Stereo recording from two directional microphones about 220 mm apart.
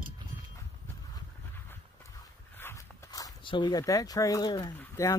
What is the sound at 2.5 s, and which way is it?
Walk, 10° left (ahead or behind).